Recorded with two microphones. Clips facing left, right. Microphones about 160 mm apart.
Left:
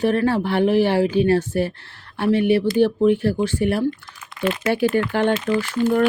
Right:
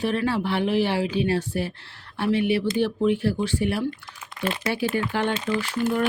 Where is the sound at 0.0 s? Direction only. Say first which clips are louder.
Left 5 dB; 50° left (ahead or behind).